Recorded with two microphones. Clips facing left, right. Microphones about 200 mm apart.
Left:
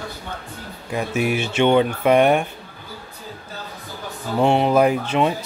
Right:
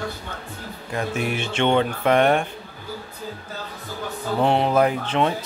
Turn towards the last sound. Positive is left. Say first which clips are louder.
# left 2 dB
turn(degrees=10)  # may be behind; listen again after turning